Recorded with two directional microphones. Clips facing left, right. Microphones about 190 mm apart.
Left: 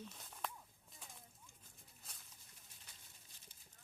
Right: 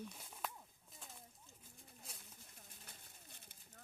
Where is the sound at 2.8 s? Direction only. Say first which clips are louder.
Right 5 dB; 60° right (ahead or behind).